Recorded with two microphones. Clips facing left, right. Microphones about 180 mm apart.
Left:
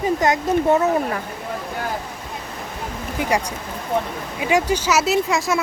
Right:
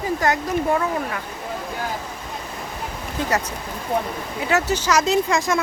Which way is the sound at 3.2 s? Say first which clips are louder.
Left 2 dB; 15° left (ahead or behind).